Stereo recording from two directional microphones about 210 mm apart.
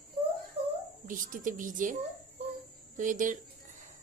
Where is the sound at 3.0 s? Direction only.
40° right (ahead or behind).